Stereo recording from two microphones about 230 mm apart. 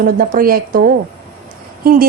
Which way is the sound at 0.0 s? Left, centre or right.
Right.